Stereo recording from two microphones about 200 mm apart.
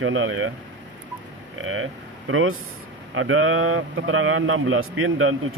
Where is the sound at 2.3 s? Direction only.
90° right.